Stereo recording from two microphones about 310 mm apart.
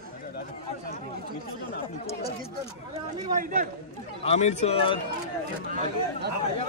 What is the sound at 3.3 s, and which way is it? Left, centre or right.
Speech, right.